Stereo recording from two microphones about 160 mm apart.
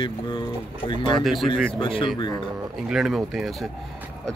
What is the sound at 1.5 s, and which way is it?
Speech, 35° left (ahead or behind).